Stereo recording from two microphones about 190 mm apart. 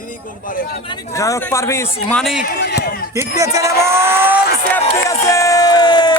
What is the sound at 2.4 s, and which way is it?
Speech, 60° left (ahead or behind).